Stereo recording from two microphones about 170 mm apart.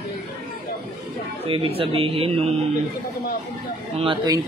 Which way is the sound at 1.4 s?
35° right (ahead or behind).